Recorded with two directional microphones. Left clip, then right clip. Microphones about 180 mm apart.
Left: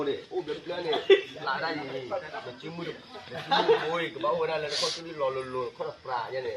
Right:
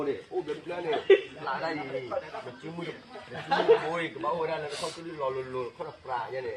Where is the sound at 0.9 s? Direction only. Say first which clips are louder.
Even; 40° left (ahead or behind).